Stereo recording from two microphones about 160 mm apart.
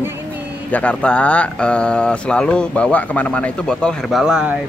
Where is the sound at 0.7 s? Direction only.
10° left (ahead or behind).